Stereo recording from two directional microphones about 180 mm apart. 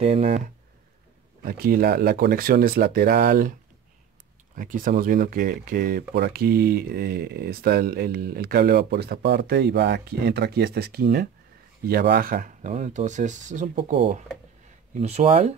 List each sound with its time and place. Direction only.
0.0 s speech: 35° right (ahead or behind)
1.4 s speech: 55° right (ahead or behind)
4.6 s speech: 45° right (ahead or behind)